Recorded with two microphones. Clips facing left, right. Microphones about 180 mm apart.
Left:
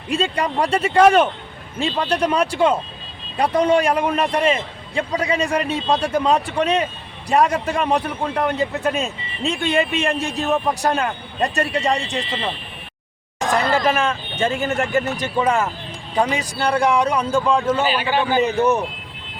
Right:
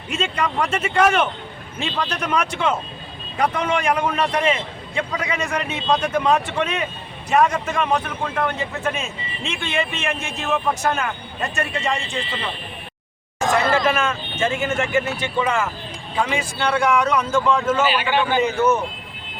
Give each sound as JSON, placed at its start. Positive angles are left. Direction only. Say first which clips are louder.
{"t": 0.1, "sound": "a man's voice", "louder": "left 3 dB", "side_deg": 35}
{"t": 13.5, "sound": "a man's voice", "louder": "even", "side_deg": 35}